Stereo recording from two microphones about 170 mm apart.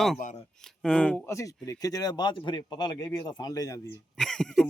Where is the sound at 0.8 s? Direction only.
5° left (ahead or behind).